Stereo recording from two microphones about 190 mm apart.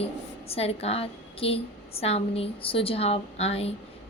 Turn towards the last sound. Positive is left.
turn(degrees=35)  # may be behind; listen again after turning